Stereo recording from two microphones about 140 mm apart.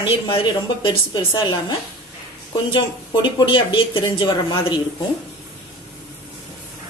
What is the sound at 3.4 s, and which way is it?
A woman's voice, 40° left (ahead or behind).